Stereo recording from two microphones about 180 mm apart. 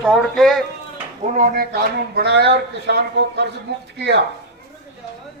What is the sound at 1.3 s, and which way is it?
A man's voice, 50° right (ahead or behind).